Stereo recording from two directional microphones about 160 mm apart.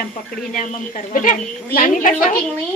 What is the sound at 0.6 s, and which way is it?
A woman's voice, 55° left (ahead or behind).